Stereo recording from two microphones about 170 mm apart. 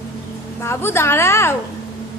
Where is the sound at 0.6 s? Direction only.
15° left (ahead or behind).